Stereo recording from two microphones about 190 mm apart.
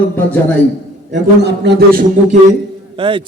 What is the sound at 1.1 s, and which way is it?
Speech, 65° right (ahead or behind).